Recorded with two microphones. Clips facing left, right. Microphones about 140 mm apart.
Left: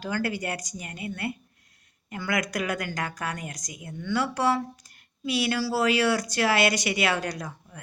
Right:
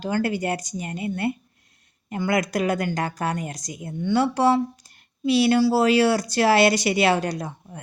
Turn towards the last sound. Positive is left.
turn(degrees=-30)  # may be behind; listen again after turning